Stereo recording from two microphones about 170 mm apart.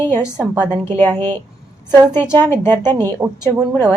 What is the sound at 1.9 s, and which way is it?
Speech, 25° right (ahead or behind).